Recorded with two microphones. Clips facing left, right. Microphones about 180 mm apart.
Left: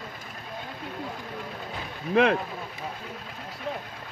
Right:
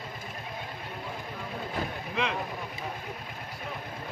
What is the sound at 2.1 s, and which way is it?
Speech, 55° left (ahead or behind).